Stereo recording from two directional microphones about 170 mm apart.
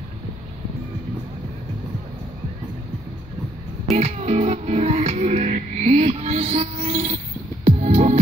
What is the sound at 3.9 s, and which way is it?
Music, 40° right (ahead or behind).